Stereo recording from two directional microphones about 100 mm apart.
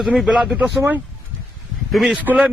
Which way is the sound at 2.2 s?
15° right (ahead or behind).